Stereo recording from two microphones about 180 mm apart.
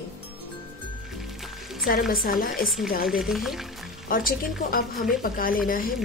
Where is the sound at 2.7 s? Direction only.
Centre (ahead or behind).